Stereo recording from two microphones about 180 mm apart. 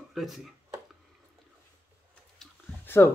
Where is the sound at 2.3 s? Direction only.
10° left (ahead or behind).